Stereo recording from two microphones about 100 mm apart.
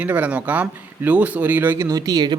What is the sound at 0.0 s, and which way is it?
Speech, 15° right (ahead or behind).